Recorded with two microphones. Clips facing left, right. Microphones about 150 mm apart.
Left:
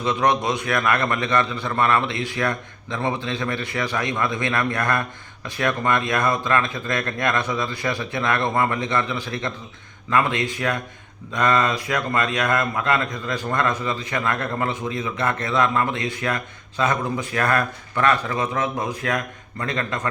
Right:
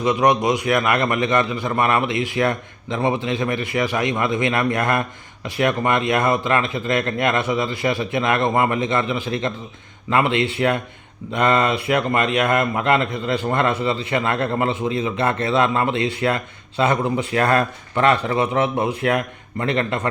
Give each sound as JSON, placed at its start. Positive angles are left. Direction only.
{"t": 0.0, "sound": "a man's voice", "side_deg": -15}